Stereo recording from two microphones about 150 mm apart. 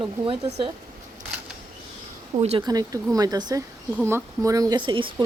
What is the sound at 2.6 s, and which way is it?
Speech, 25° right (ahead or behind).